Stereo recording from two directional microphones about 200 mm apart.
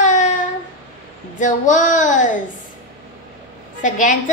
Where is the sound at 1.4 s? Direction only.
40° left (ahead or behind).